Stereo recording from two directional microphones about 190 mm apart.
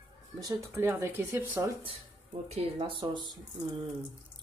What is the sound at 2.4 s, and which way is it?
Speech, 30° right (ahead or behind).